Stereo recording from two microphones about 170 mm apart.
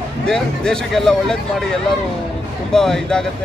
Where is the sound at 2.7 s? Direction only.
5° left (ahead or behind).